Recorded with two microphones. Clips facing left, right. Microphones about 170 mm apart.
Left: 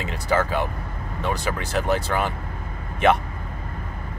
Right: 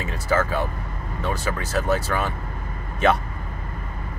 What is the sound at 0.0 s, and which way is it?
Speech, 15° left (ahead or behind).